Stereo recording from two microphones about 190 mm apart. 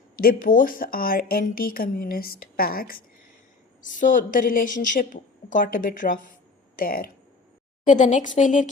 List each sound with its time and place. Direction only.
0.2 s a woman's voice: 50° left (ahead or behind)
7.9 s a woman's voice: 40° left (ahead or behind)